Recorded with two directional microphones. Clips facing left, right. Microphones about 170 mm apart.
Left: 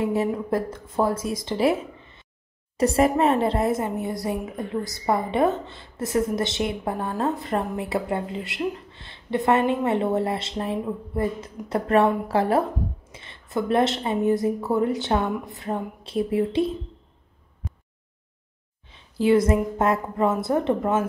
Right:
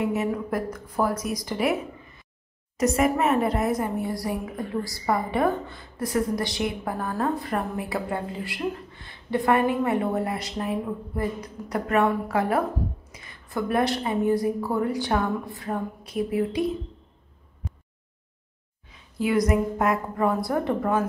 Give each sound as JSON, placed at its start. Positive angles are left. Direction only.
{"t": 0.0, "sound": "a woman's voice", "side_deg": 30}
{"t": 18.9, "sound": "a woman's voice", "side_deg": 30}